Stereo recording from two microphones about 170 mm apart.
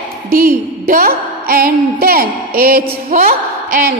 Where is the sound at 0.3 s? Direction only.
60° right (ahead or behind).